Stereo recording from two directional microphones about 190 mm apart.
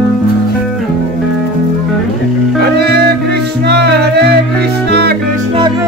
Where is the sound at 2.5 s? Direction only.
55° right (ahead or behind).